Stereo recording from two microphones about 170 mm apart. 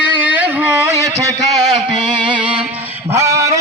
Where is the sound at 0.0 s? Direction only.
10° right (ahead or behind).